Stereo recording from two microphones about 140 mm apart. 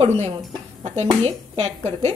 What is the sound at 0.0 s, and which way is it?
Speech, 50° right (ahead or behind).